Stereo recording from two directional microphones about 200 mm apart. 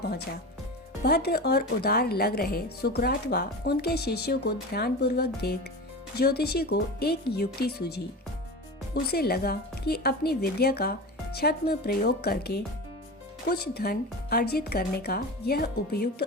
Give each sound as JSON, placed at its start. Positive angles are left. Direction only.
{"t": 1.0, "sound": "speech", "side_deg": 55}
{"t": 9.0, "sound": "speech", "side_deg": 50}